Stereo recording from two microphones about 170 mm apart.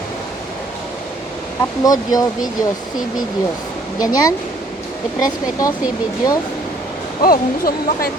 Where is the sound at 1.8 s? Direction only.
20° left (ahead or behind).